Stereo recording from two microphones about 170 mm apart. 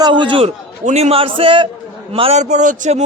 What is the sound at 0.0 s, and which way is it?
A man's voice, 30° right (ahead or behind).